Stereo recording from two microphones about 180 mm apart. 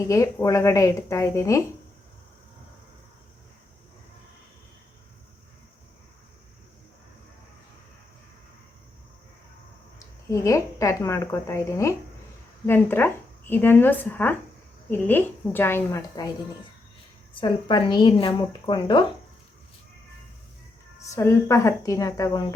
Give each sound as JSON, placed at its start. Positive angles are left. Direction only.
{"t": 0.0, "sound": "a woman's voice", "side_deg": 15}
{"t": 10.2, "sound": "a woman's voice", "side_deg": 15}
{"t": 17.4, "sound": "a woman's voice", "side_deg": 25}
{"t": 21.2, "sound": "a woman's voice", "side_deg": 15}